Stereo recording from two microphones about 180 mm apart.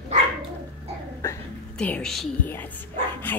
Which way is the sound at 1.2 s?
10° left (ahead or behind).